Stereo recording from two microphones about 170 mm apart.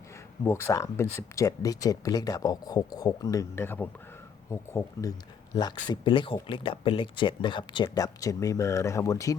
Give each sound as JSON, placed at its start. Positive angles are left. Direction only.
{"t": 0.4, "sound": "speech", "side_deg": 15}
{"t": 5.9, "sound": "speech", "side_deg": 30}